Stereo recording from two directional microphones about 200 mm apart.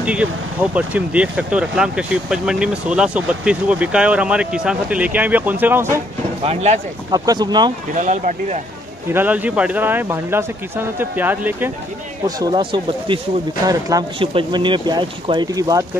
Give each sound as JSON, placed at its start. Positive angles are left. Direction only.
{"t": 0.0, "sound": "speech", "side_deg": -5}
{"t": 6.4, "sound": "speech", "side_deg": -30}
{"t": 7.1, "sound": "speech", "side_deg": -20}
{"t": 7.9, "sound": "speech", "side_deg": -40}
{"t": 9.1, "sound": "speech", "side_deg": -10}